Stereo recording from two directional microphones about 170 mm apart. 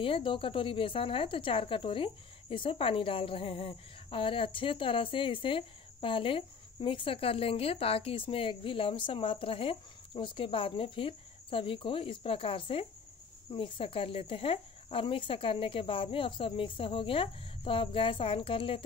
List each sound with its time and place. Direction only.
0.0 s a woman's voice: 30° left (ahead or behind)